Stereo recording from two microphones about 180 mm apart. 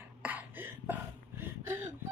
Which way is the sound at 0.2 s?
10° right (ahead or behind).